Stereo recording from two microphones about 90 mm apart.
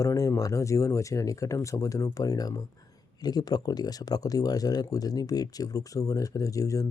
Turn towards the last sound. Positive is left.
turn(degrees=40)  # may be behind; listen again after turning